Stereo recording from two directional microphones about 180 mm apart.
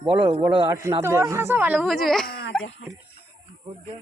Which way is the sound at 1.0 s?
15° right (ahead or behind).